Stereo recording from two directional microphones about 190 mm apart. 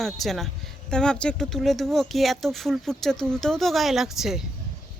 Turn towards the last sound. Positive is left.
turn(degrees=0)  # may be behind; listen again after turning